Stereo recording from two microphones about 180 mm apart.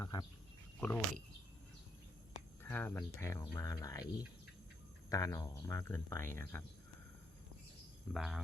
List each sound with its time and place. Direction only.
0.0 s a sound: 20° left (ahead or behind)
0.8 s speech: 10° left (ahead or behind)
2.6 s speech: 10° left (ahead or behind)
5.0 s speech: 20° left (ahead or behind)
8.1 s speech: centre (ahead or behind)